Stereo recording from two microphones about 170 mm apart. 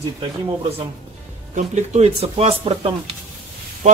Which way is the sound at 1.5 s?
40° right (ahead or behind).